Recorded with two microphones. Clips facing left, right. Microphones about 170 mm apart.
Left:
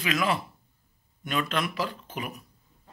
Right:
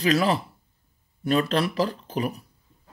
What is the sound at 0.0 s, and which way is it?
Speech, 35° right (ahead or behind).